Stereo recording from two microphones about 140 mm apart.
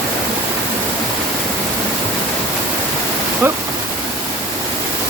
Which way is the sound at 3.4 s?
15° right (ahead or behind).